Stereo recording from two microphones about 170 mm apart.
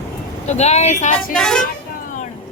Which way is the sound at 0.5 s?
40° left (ahead or behind).